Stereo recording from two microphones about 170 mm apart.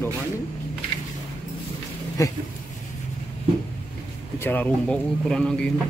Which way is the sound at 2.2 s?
20° left (ahead or behind).